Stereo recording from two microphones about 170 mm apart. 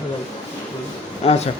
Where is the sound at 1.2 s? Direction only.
35° left (ahead or behind).